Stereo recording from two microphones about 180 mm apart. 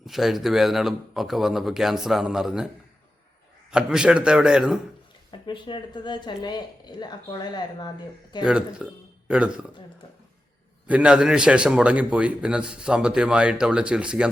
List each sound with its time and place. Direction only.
0.0 s a man's voice: centre (ahead or behind)
3.7 s a man's voice: 5° right (ahead or behind)
5.3 s speech: 25° left (ahead or behind)
8.4 s speech: 5° right (ahead or behind)
10.8 s a man's voice: 5° right (ahead or behind)